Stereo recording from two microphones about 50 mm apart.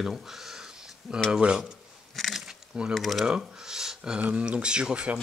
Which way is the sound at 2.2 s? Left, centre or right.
Centre.